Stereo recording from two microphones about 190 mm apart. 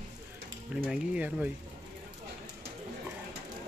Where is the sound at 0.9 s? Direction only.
5° right (ahead or behind).